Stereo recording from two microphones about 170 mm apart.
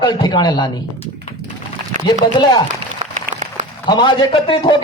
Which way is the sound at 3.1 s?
45° right (ahead or behind).